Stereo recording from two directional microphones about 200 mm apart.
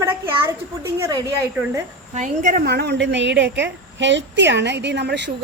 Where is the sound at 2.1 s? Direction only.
40° right (ahead or behind).